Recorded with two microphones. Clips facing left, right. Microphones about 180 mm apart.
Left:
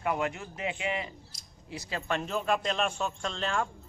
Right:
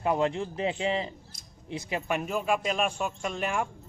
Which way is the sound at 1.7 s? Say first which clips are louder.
Right 3 dB; 20° right (ahead or behind).